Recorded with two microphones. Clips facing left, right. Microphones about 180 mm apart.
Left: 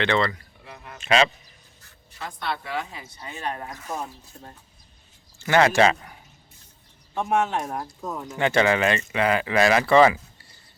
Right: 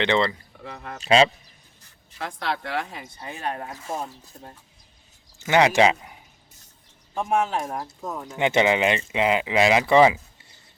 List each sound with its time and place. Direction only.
0.0 s speech: 20° right (ahead or behind)
0.6 s speech: 75° right (ahead or behind)
0.9 s speech: 30° right (ahead or behind)
2.1 s speech: 90° right
3.2 s speech: 30° right (ahead or behind)
5.4 s speech: 15° right (ahead or behind)
7.2 s speech: 10° right (ahead or behind)
8.4 s speech: 15° right (ahead or behind)